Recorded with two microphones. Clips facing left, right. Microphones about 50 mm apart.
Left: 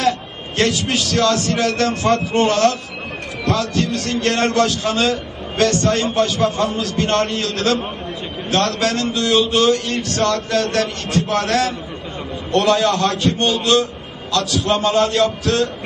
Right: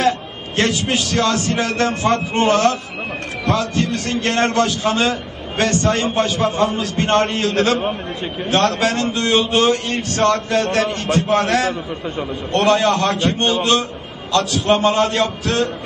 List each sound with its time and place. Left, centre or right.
0.6 s a man's voice: right